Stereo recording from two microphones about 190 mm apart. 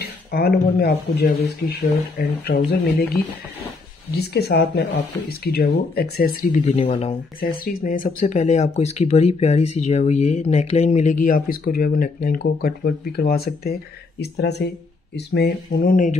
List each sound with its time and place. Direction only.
0.3 s speech: 55° left (ahead or behind)
4.3 s speech: 55° left (ahead or behind); by 7.2 s 35° left (ahead or behind)
7.3 s speech: 45° left (ahead or behind)